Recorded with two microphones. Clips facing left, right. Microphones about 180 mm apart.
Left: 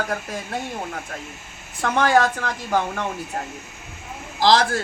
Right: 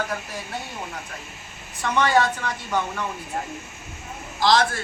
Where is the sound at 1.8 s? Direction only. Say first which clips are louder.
Left 2 dB; 90° left.